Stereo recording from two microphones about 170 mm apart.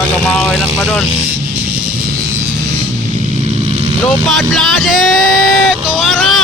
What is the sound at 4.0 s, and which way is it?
Speech, centre (ahead or behind).